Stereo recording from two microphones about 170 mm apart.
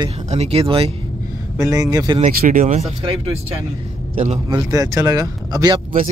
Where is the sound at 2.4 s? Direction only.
50° right (ahead or behind).